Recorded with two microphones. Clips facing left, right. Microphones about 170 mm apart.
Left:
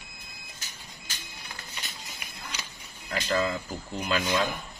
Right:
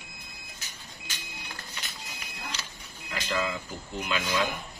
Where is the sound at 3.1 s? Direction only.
40° left (ahead or behind).